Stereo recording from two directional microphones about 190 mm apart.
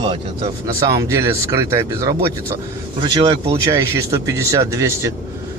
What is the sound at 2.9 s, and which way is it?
Speech, 25° right (ahead or behind).